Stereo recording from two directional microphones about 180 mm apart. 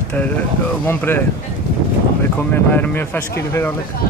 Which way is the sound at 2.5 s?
10° left (ahead or behind).